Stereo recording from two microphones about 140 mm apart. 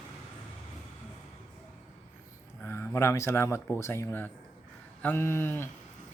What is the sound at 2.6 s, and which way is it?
Speech, 15° left (ahead or behind).